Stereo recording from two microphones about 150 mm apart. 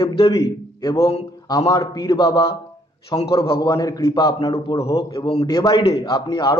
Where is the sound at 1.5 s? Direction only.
25° left (ahead or behind).